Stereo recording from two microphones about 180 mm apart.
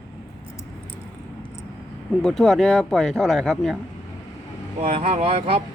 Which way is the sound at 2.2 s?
Centre (ahead or behind).